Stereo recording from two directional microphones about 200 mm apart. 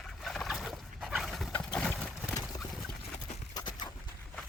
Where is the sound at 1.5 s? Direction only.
5° left (ahead or behind).